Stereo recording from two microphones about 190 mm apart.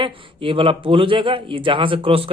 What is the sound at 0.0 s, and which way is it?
A man's voice, 25° right (ahead or behind).